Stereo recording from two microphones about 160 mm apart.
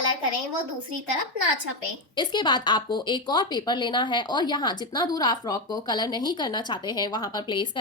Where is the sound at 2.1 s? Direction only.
30° left (ahead or behind).